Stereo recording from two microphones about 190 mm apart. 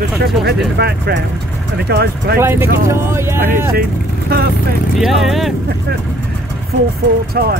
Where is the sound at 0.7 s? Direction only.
60° right (ahead or behind).